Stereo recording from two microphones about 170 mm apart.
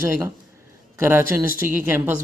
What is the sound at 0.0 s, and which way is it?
A man's voice, 15° right (ahead or behind).